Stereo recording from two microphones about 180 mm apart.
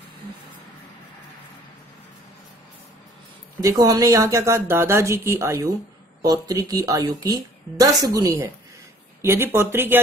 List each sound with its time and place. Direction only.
3.6 s a woman's voice: 20° right (ahead or behind)